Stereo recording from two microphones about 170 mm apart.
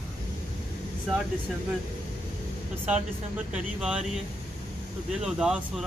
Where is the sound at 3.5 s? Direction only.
5° right (ahead or behind).